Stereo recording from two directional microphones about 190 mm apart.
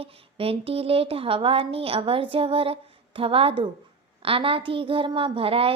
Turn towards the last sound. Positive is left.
turn(degrees=-30)  # may be behind; listen again after turning